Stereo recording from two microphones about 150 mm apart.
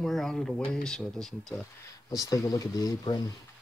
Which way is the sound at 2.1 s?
20° left (ahead or behind).